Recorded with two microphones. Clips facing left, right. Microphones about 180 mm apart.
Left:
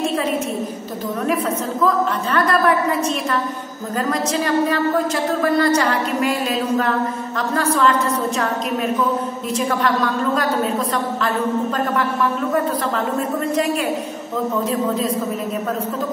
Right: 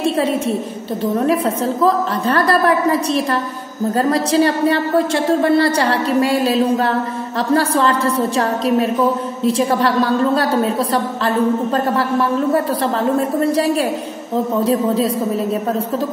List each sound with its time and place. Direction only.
1.2 s a woman's voice: 30° right (ahead or behind)
14.6 s a woman's voice: 30° right (ahead or behind)